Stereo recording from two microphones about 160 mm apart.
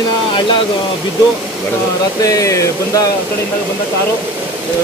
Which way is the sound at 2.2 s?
20° left (ahead or behind).